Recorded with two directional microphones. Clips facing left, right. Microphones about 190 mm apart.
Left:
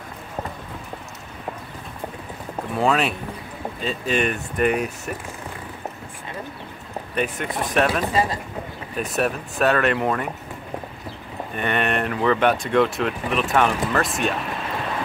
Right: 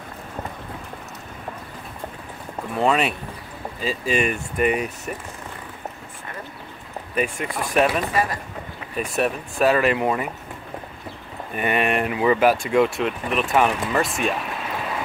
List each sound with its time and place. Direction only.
2.7 s speech: 5° right (ahead or behind)
7.2 s speech: centre (ahead or behind)
8.1 s speech: 25° left (ahead or behind)
8.9 s speech: centre (ahead or behind)
11.5 s speech: 5° right (ahead or behind)